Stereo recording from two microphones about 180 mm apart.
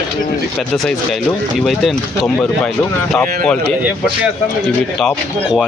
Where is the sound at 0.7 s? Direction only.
Centre (ahead or behind).